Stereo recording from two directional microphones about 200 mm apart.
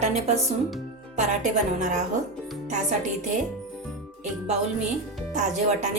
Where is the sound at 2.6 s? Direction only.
40° right (ahead or behind).